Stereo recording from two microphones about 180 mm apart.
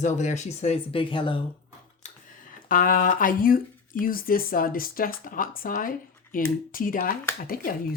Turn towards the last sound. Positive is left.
turn(degrees=55)  # may be behind; listen again after turning